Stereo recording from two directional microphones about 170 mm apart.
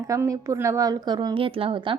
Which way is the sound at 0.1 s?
20° right (ahead or behind).